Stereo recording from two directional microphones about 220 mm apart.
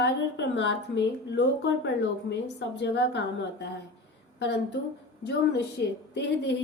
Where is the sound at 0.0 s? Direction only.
55° left (ahead or behind).